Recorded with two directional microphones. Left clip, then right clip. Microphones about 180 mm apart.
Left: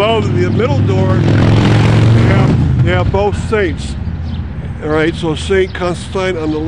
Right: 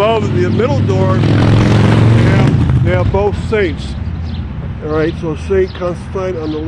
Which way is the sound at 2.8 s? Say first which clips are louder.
Even; 25° left (ahead or behind).